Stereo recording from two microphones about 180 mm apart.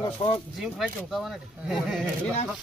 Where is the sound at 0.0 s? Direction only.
30° left (ahead or behind).